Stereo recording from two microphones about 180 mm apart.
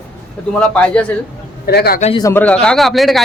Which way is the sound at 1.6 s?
60° left (ahead or behind).